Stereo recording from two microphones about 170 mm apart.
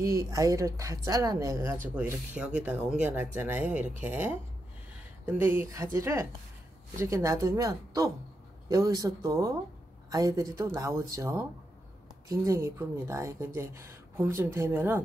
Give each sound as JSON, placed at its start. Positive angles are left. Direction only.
{"t": 0.0, "sound": "speech", "side_deg": -20}